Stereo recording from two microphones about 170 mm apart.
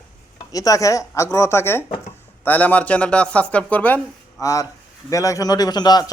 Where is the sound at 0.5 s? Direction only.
20° left (ahead or behind).